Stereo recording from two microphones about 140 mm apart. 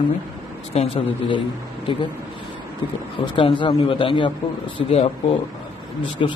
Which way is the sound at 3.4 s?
35° left (ahead or behind).